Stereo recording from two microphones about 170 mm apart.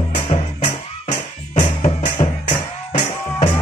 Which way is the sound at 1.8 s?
35° left (ahead or behind).